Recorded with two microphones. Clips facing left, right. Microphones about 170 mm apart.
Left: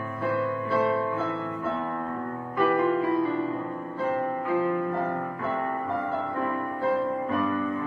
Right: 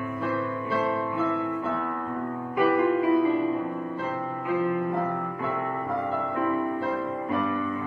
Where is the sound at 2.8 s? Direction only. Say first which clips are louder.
Right 2 dB; 20° right (ahead or behind).